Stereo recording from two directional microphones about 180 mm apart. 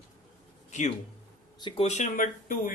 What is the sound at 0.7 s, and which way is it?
Speech, 40° left (ahead or behind).